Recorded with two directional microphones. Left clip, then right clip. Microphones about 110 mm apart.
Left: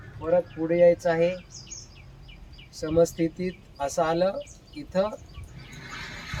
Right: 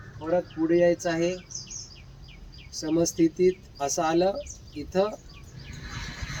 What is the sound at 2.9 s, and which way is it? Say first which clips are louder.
Speech: left 1 dB; 30° left (ahead or behind).